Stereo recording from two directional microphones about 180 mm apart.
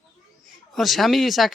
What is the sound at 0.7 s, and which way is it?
Speech, centre (ahead or behind).